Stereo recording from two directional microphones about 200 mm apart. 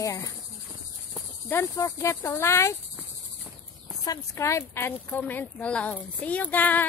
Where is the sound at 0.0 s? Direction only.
15° left (ahead or behind).